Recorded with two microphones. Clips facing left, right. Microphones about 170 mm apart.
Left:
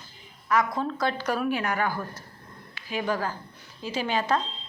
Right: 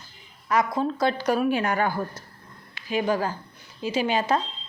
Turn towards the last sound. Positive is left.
turn(degrees=-15)  # may be behind; listen again after turning